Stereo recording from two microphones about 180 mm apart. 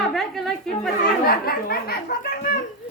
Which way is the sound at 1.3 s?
55° left (ahead or behind).